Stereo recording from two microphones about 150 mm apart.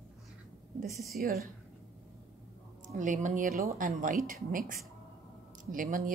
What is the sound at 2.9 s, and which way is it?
A woman's voice, 55° right (ahead or behind).